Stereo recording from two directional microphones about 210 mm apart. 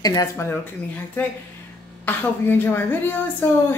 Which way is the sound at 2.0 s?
10° left (ahead or behind).